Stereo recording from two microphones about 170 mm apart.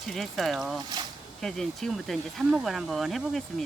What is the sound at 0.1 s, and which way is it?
Speech, centre (ahead or behind).